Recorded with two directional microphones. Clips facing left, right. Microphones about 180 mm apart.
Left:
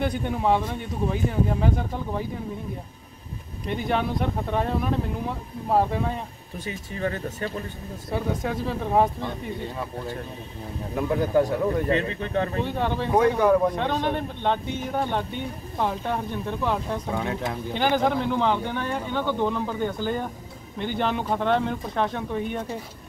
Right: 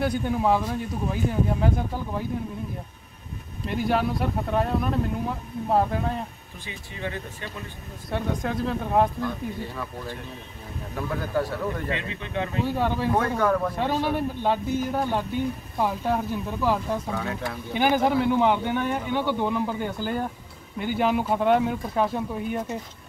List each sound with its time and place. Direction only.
0.0 s speech: centre (ahead or behind)
3.6 s speech: centre (ahead or behind)
6.7 s speech: 40° left (ahead or behind)
8.1 s speech: 5° left (ahead or behind)
11.0 s a man's voice: 20° left (ahead or behind)
11.9 s speech: 40° left (ahead or behind)
12.6 s speech: 5° right (ahead or behind)
13.1 s a man's voice: 15° left (ahead or behind)
13.7 s speech: 5° right (ahead or behind)
17.1 s speech: 20° left (ahead or behind)
17.7 s speech: 10° right (ahead or behind)